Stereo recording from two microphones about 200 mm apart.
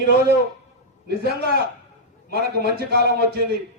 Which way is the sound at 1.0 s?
50° right (ahead or behind).